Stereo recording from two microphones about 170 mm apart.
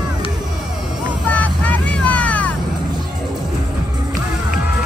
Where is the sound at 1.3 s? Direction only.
10° left (ahead or behind).